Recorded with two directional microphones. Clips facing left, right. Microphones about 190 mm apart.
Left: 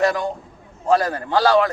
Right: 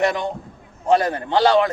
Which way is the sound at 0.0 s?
20° right (ahead or behind).